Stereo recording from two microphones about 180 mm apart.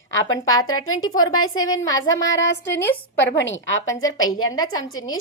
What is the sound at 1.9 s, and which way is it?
A woman's voice, 90° left.